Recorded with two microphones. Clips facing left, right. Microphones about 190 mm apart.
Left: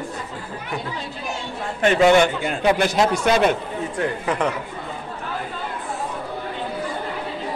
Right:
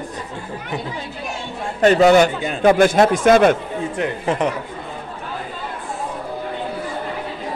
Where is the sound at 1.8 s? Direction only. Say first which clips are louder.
Right 3 dB; 40° right (ahead or behind).